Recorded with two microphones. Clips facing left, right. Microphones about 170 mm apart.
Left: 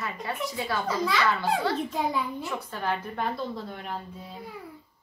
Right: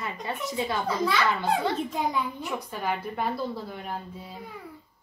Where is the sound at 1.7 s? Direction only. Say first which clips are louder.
Even; centre (ahead or behind).